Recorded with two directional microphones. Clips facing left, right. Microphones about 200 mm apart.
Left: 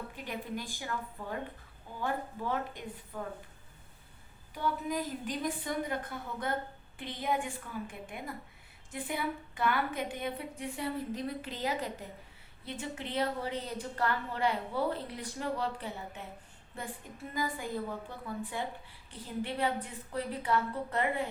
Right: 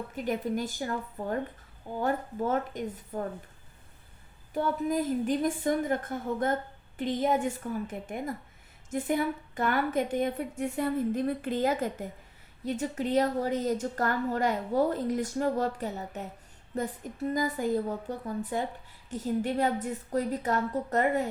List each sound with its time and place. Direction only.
0.1 s a woman's voice: 45° right (ahead or behind)
4.5 s a woman's voice: 50° right (ahead or behind)